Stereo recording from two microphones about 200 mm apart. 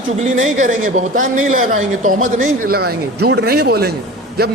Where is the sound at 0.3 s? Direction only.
40° right (ahead or behind).